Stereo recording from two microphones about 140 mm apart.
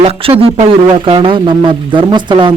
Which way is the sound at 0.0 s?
45° right (ahead or behind).